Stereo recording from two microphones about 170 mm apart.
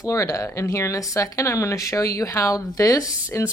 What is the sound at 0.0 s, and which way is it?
Speech, 20° left (ahead or behind).